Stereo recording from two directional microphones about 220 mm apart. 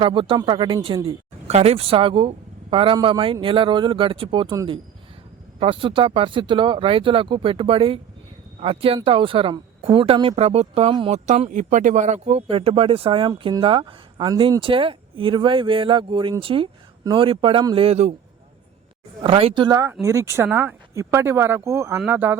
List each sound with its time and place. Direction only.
0.0 s speech: 20° right (ahead or behind)
19.2 s speech: 25° right (ahead or behind); by 22.4 s 10° right (ahead or behind)